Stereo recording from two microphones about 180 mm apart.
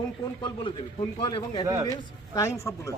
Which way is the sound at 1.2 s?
30° left (ahead or behind).